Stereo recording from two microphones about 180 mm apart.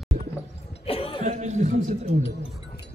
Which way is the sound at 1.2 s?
40° right (ahead or behind).